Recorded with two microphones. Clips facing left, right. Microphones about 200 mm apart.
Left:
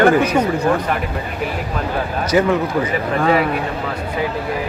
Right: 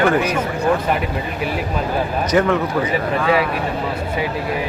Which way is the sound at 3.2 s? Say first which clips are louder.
Left 2 dB; 40° left (ahead or behind).